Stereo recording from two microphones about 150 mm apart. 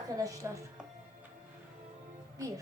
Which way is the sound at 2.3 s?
20° right (ahead or behind).